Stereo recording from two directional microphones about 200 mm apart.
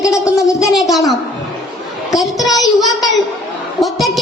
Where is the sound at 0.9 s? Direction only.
Centre (ahead or behind).